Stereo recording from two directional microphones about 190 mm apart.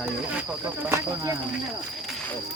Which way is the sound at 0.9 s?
15° right (ahead or behind).